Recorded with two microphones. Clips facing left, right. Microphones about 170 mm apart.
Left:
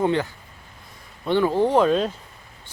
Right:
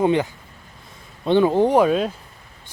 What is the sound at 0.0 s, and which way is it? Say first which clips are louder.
Speech: right 3 dB; 15° right (ahead or behind).